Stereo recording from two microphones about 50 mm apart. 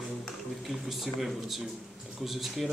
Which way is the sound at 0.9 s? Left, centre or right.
Centre.